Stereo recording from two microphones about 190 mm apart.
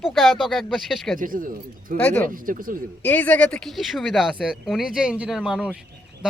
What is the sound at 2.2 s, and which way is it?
Speech, 45° right (ahead or behind).